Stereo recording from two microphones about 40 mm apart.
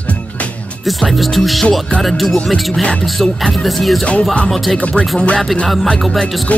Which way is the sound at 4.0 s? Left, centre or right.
Left.